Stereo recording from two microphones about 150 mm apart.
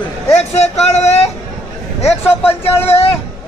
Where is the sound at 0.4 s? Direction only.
45° left (ahead or behind).